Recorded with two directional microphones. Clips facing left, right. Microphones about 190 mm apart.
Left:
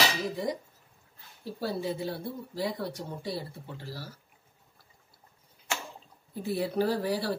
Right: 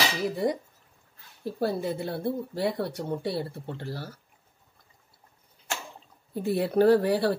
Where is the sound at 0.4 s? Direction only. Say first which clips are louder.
Right 6 dB; 60° right (ahead or behind).